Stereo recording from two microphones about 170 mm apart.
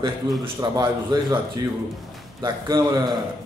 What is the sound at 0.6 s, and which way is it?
A man's voice, 25° right (ahead or behind).